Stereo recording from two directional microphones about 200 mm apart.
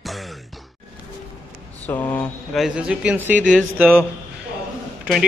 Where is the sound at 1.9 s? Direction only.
10° left (ahead or behind).